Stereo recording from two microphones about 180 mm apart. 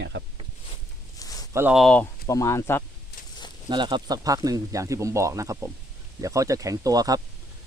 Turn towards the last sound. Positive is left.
turn(degrees=-20)  # may be behind; listen again after turning